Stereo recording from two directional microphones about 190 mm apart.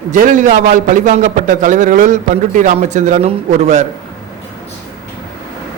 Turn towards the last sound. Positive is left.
turn(degrees=-35)  # may be behind; listen again after turning